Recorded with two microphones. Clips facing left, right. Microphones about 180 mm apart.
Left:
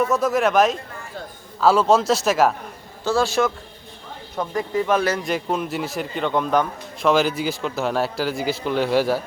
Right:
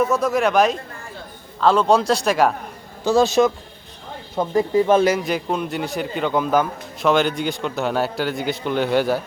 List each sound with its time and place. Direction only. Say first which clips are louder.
0.0 s a man's voice: right 1 dB; centre (ahead or behind)
3.0 s a man's voice: right 4 dB; 15° right (ahead or behind)
5.0 s a man's voice: right 3 dB; 5° right (ahead or behind)